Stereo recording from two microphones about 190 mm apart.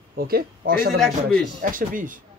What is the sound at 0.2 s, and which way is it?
Speech, 50° right (ahead or behind).